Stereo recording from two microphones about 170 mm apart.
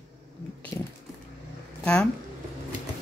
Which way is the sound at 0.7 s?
20° left (ahead or behind).